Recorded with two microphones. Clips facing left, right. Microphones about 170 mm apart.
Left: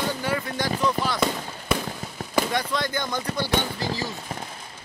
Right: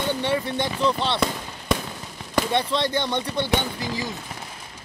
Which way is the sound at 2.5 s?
30° right (ahead or behind).